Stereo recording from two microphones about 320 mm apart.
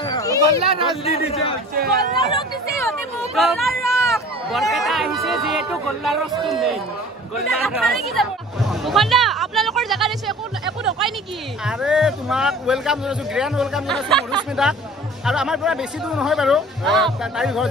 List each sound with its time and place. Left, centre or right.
0.0 s a sound: centre
1.0 s a man's voice: centre
1.8 s speech: right
2.3 s speech: centre
7.5 s chatter: centre
11.6 s speech: centre